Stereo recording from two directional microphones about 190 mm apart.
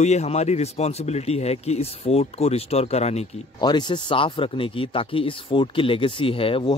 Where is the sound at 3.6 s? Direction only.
25° left (ahead or behind).